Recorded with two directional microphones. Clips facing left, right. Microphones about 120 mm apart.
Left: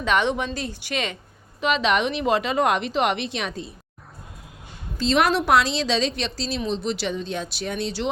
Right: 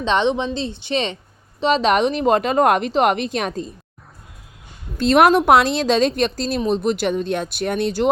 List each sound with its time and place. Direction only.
0.0 s a woman's voice: 25° right (ahead or behind)
1.6 s a woman's voice: 40° right (ahead or behind)
4.9 s a woman's voice: 55° right (ahead or behind)